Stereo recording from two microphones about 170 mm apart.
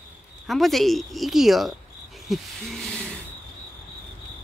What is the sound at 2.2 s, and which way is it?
Hoot, centre (ahead or behind).